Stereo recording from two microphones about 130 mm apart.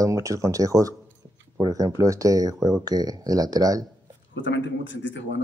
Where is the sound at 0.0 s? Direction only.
25° right (ahead or behind).